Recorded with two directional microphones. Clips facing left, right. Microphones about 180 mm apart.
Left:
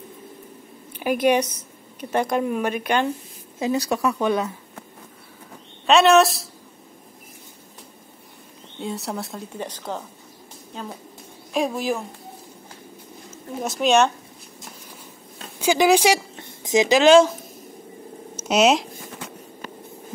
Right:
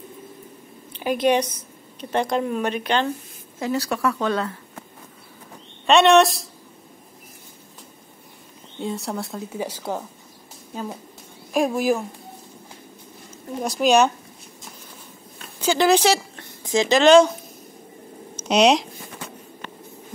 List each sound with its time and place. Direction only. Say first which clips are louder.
2.0 s speech: even; 10° left (ahead or behind)
5.9 s speech: even; centre (ahead or behind)
8.7 s speech: right 1 dB; centre (ahead or behind)
13.6 s speech: right 1 dB; centre (ahead or behind)
15.6 s speech: left 1 dB; 10° left (ahead or behind)
18.3 s a sound: right 1 dB; 5° left (ahead or behind)